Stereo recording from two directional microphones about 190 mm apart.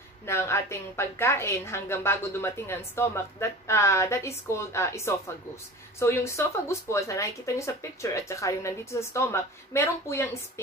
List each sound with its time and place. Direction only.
0.3 s a woman's voice: 15° left (ahead or behind)